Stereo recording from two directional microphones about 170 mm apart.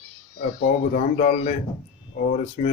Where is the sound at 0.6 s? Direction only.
45° left (ahead or behind).